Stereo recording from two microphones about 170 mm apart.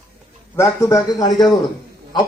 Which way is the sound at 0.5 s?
15° left (ahead or behind).